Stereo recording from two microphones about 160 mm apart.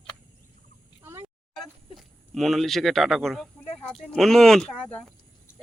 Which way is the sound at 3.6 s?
5° left (ahead or behind).